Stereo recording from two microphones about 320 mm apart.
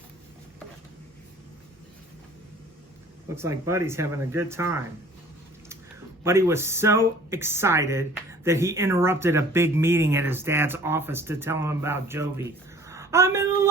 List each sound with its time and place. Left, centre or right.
3.3 s speech: centre
6.2 s speech: centre